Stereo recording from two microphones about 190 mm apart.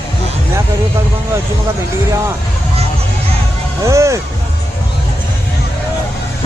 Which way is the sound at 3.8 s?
15° right (ahead or behind).